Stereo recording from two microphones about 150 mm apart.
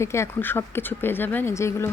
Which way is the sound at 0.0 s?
20° left (ahead or behind).